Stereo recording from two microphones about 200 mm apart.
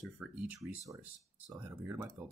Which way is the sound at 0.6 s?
15° right (ahead or behind).